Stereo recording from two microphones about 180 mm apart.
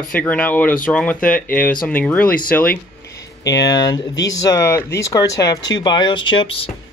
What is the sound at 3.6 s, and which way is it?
Speech, 25° left (ahead or behind).